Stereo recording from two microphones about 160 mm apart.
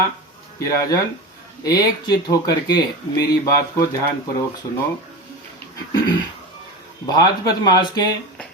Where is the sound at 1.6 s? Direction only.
25° left (ahead or behind).